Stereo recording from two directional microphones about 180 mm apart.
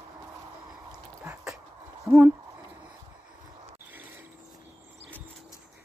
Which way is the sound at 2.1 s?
10° right (ahead or behind).